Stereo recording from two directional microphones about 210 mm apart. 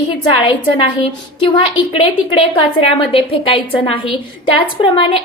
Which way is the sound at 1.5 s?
25° left (ahead or behind).